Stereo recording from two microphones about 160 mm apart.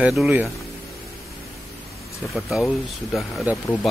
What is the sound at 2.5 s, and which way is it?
A man's voice, 5° right (ahead or behind).